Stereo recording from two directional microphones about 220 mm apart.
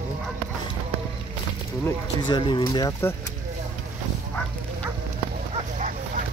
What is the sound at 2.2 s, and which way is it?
Speech, 20° left (ahead or behind).